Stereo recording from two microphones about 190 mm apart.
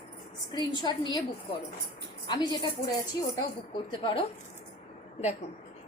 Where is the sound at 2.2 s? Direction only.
25° left (ahead or behind).